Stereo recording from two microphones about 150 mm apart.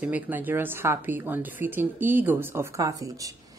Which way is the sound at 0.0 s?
10° right (ahead or behind).